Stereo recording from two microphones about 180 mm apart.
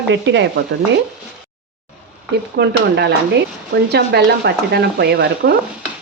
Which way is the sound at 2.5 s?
70° right (ahead or behind).